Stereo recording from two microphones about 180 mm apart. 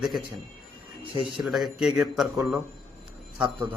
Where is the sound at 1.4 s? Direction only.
Centre (ahead or behind).